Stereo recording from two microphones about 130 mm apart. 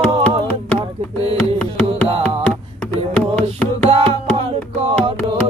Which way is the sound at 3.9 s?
50° right (ahead or behind).